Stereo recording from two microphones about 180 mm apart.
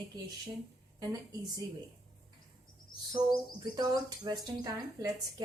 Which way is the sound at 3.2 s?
20° right (ahead or behind).